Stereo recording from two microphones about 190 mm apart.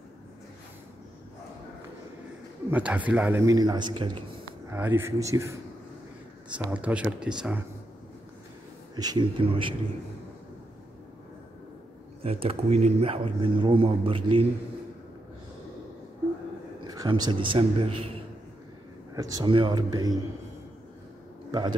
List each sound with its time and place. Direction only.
2.7 s a man's voice: 10° right (ahead or behind); by 4.2 s 25° right (ahead or behind)
4.6 s a man's voice: 10° right (ahead or behind)
6.7 s a man's voice: 5° right (ahead or behind)
8.9 s speech: 20° right (ahead or behind)
12.2 s speech: 30° right (ahead or behind)
16.8 s a man's voice: 20° right (ahead or behind)
19.1 s speech: 20° right (ahead or behind)
21.5 s a man's voice: 25° right (ahead or behind)